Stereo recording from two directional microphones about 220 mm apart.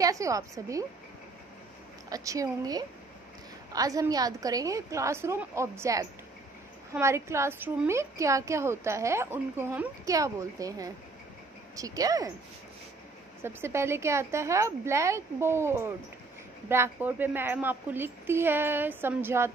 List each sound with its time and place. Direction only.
0.0 s a woman's voice: 15° right (ahead or behind)
2.0 s a woman's voice: 15° right (ahead or behind)
13.4 s a woman's voice: 10° right (ahead or behind)